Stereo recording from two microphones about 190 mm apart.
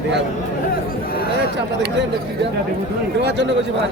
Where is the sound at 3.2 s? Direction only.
65° right (ahead or behind).